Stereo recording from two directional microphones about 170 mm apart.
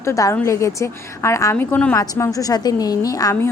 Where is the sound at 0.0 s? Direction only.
20° left (ahead or behind).